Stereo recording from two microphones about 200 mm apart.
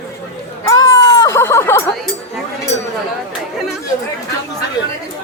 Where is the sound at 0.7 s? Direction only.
15° left (ahead or behind).